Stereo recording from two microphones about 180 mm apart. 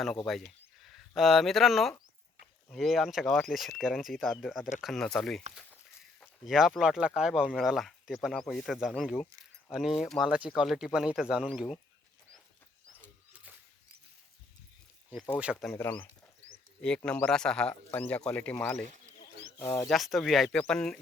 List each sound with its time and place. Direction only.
0.3 s speech: centre (ahead or behind)
6.4 s speech: centre (ahead or behind)
9.4 s keys jangling: centre (ahead or behind)
10.0 s speech: centre (ahead or behind)
15.4 s speech: 5° right (ahead or behind)
15.7 s speech: 10° left (ahead or behind)
19.9 s speech: centre (ahead or behind)